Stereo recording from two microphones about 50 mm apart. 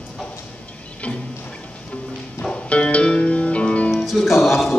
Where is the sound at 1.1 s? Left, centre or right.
Left.